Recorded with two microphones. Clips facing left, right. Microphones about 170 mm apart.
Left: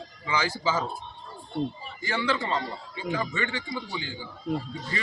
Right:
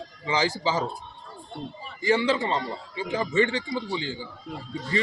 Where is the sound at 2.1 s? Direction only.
25° right (ahead or behind).